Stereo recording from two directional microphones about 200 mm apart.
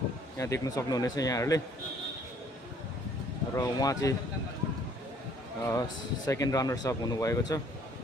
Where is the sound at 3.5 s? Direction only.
15° left (ahead or behind).